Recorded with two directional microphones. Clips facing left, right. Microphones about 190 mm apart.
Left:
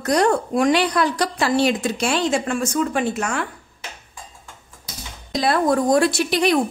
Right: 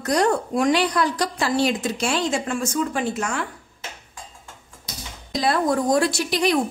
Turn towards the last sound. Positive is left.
turn(degrees=60)  # may be behind; listen again after turning